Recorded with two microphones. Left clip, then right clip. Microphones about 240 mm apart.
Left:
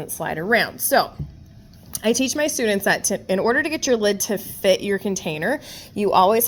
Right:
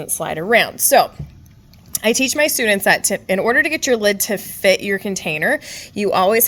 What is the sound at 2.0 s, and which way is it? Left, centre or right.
A woman's voice, right.